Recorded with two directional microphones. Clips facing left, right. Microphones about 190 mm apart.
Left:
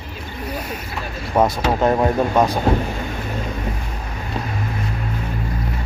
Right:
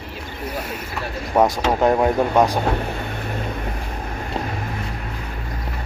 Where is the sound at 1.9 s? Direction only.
15° right (ahead or behind).